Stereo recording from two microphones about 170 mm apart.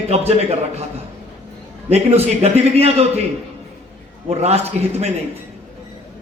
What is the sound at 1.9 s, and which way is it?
Speech, 35° right (ahead or behind).